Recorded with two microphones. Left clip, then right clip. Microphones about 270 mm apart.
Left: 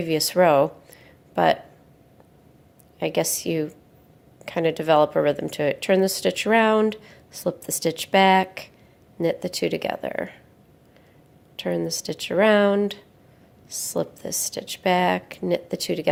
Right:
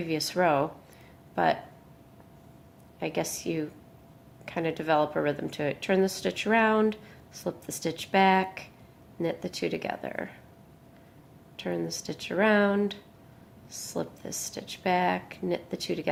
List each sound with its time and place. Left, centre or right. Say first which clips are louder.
0.0 s speech: left 8 dB; left
3.0 s speech: left 7 dB; left
11.5 s speech: left 7 dB; left